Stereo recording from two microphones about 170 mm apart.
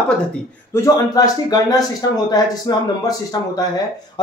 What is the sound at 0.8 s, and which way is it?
Speech, 20° left (ahead or behind).